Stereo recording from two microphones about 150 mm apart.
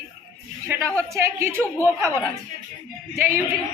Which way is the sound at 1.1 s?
20° right (ahead or behind).